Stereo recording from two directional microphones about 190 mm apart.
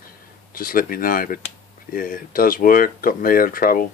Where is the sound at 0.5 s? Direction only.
50° left (ahead or behind).